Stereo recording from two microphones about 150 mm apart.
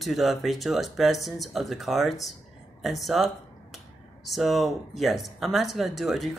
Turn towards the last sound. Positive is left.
turn(degrees=0)  # may be behind; listen again after turning